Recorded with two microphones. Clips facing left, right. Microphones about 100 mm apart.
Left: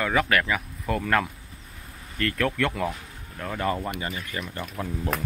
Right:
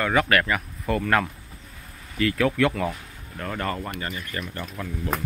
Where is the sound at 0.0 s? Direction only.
Centre (ahead or behind).